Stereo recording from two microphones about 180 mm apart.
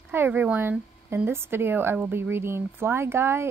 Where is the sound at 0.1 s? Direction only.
10° right (ahead or behind).